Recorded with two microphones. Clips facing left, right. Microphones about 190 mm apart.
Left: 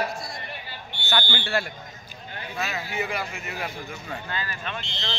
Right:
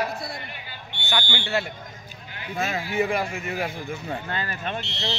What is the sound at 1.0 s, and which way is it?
Speech, 15° right (ahead or behind).